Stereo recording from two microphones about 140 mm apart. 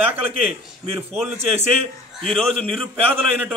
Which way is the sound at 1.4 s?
45° right (ahead or behind).